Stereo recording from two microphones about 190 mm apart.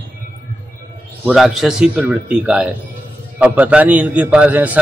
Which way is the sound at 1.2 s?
Centre (ahead or behind).